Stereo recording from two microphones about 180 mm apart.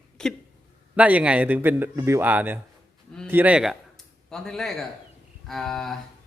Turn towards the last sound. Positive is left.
turn(degrees=0)  # may be behind; listen again after turning